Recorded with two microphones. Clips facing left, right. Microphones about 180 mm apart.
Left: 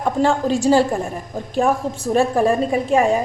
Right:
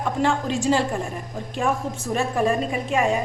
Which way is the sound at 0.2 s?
35° left (ahead or behind).